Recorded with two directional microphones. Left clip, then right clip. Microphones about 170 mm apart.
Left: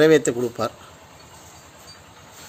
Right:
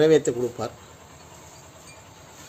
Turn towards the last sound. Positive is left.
turn(degrees=15)  # may be behind; listen again after turning